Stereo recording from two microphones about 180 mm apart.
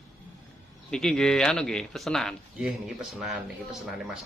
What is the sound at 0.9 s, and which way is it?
Speech, 5° left (ahead or behind).